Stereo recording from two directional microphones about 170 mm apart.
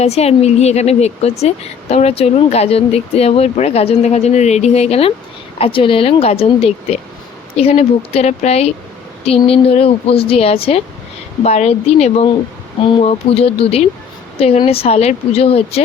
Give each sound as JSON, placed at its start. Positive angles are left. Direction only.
{"t": 0.0, "sound": "speech", "side_deg": 40}